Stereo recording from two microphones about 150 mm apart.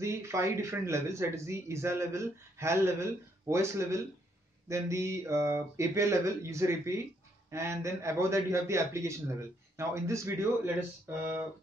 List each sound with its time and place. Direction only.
0.0 s speech: 20° right (ahead or behind)